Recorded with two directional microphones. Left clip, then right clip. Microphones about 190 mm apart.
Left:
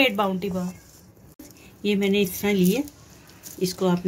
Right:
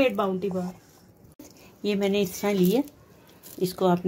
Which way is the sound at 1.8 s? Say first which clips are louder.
Left 2 dB; 35° right (ahead or behind).